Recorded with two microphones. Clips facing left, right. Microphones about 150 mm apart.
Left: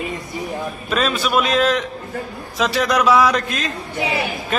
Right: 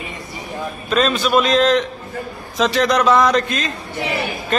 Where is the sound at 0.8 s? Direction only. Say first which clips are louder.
Right 3 dB; 5° left (ahead or behind).